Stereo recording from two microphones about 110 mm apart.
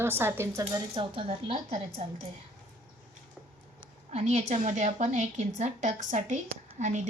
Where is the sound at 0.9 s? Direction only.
55° right (ahead or behind).